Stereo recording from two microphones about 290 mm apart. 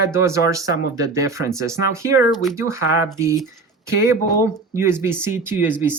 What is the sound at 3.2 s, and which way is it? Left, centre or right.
Speech, centre.